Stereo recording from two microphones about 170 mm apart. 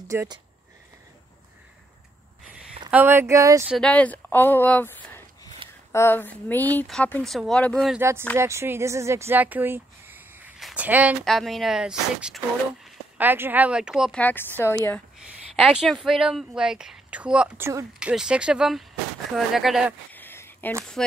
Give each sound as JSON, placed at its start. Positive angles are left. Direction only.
{"t": 0.1, "sound": "speech", "side_deg": -15}
{"t": 2.9, "sound": "speech", "side_deg": -10}
{"t": 3.6, "sound": "speech", "side_deg": 0}
{"t": 8.0, "sound": "speech", "side_deg": -15}
{"t": 14.6, "sound": "speech", "side_deg": 15}
{"t": 15.5, "sound": "speech", "side_deg": -5}
{"t": 17.9, "sound": "speech", "side_deg": -5}
{"t": 20.1, "sound": "a sound", "side_deg": 10}